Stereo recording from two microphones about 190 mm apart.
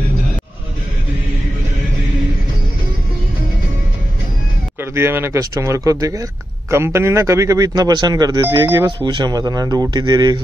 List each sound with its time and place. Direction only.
4.9 s speech: 15° right (ahead or behind)